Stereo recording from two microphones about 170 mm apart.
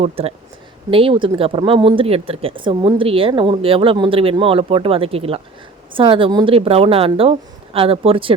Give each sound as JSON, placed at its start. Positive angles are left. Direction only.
{"t": 0.0, "sound": "speech", "side_deg": -35}